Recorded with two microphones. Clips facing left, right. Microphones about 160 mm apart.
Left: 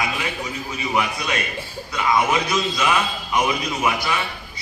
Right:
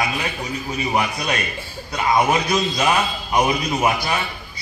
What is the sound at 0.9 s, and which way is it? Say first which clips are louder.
A man's voice: even; 35° right (ahead or behind).